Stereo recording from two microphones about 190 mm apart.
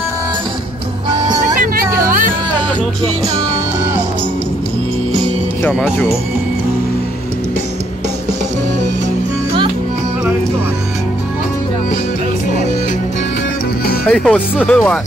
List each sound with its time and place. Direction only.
1.1 s music: 25° right (ahead or behind)
2.0 s music: 45° right (ahead or behind)
5.6 s speech: 10° left (ahead or behind)
14.0 s speech: 5° left (ahead or behind)